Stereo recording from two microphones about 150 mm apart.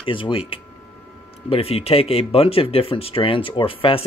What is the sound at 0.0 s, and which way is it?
Speech, 35° left (ahead or behind).